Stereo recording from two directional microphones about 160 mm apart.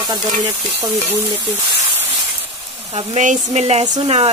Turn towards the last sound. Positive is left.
turn(degrees=-30)  # may be behind; listen again after turning